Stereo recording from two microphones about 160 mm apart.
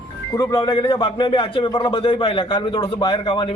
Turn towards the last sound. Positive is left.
turn(degrees=30)  # may be behind; listen again after turning